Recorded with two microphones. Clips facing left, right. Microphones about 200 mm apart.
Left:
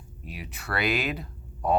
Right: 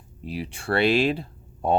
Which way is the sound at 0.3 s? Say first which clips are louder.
Right 9 dB; 30° right (ahead or behind).